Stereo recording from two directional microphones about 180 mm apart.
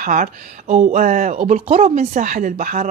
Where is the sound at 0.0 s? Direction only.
50° right (ahead or behind).